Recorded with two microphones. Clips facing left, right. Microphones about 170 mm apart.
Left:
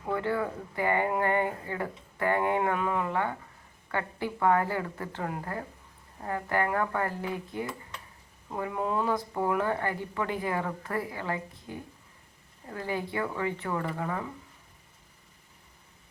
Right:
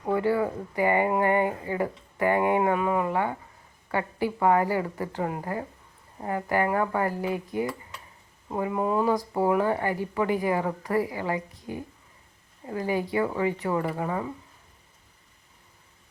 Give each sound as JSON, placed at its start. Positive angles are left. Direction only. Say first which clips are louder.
{"t": 0.0, "sound": "speech", "louder": "right 5 dB", "side_deg": -10}
{"t": 8.7, "sound": "speech", "louder": "right 5 dB", "side_deg": -10}
{"t": 9.1, "sound": "speech", "louder": "right 5 dB", "side_deg": -35}
{"t": 9.5, "sound": "speech", "louder": "right 4 dB", "side_deg": -15}